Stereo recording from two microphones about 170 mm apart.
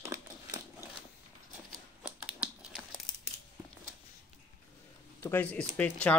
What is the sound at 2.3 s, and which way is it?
Crumpling, 5° right (ahead or behind).